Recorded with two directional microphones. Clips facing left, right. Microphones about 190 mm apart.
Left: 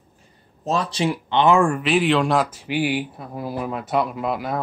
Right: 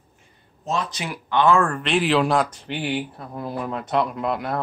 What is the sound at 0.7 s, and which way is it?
Speech, 30° left (ahead or behind).